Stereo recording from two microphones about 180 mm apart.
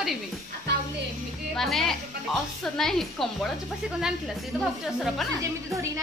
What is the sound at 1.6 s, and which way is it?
A woman's voice, centre (ahead or behind).